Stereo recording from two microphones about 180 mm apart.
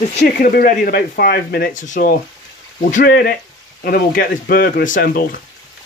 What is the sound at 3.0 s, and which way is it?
Speech, 60° left (ahead or behind).